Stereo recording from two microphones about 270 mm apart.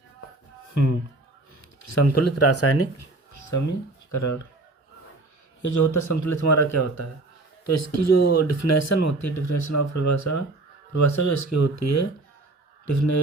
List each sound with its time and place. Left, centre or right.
0.7 s speech: left
1.8 s speech: left
4.1 s speech: left
5.6 s a man's voice: left